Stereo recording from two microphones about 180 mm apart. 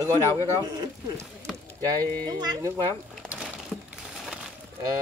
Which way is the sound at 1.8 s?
20° right (ahead or behind).